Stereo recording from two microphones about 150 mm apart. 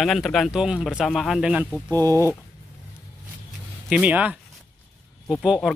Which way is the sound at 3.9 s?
10° right (ahead or behind).